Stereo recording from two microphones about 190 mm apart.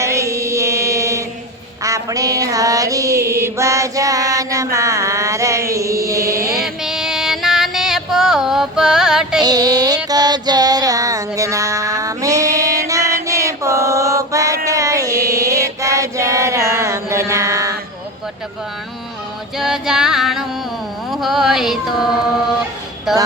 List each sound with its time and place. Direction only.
0.0 s mantra: 15° right (ahead or behind)
6.8 s female singing: 5° right (ahead or behind)
9.4 s child singing: 20° right (ahead or behind)
19.5 s female singing: centre (ahead or behind)
21.1 s music: centre (ahead or behind)
23.1 s a sound: centre (ahead or behind)